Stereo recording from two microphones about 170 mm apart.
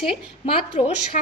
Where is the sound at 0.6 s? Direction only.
40° left (ahead or behind).